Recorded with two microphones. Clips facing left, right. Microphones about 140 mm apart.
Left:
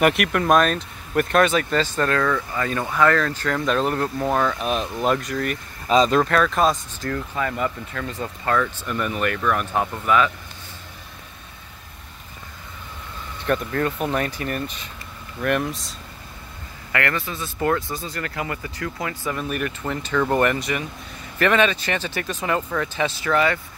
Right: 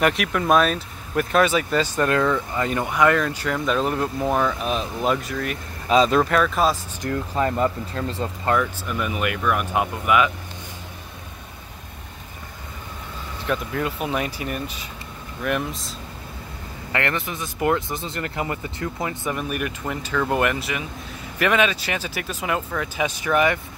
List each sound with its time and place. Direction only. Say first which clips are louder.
0.0 s speech: left 2 dB; 5° left (ahead or behind)
7.0 s speech: right 1 dB; 20° right (ahead or behind)
7.3 s speech: right 6 dB; 35° right (ahead or behind)
8.5 s speech: even; 5° right (ahead or behind)
13.5 s speech: left 3 dB; 5° right (ahead or behind)
16.9 s speech: even; 20° right (ahead or behind)
19.5 s speech: left 1 dB; 10° right (ahead or behind)
23.0 s speech: right 1 dB; 15° right (ahead or behind)